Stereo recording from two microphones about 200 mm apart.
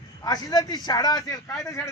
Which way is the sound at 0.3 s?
20° left (ahead or behind).